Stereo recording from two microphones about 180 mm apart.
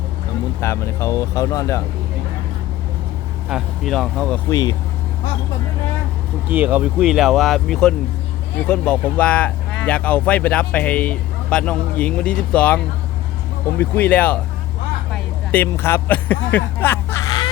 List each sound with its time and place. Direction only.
0.6 s speech: 15° left (ahead or behind)
3.5 s speech: centre (ahead or behind)
4.4 s speech: 20° left (ahead or behind)
6.5 s speech: 10° right (ahead or behind); by 14.3 s 10° left (ahead or behind)
15.1 s a sound: 10° left (ahead or behind)